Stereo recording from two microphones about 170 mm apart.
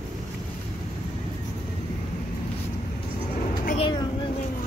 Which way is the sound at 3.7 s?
30° left (ahead or behind).